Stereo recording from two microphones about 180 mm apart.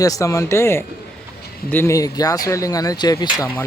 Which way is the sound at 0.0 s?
20° left (ahead or behind).